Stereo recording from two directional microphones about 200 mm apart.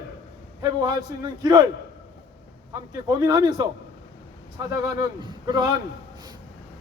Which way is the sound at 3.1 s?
20° right (ahead or behind).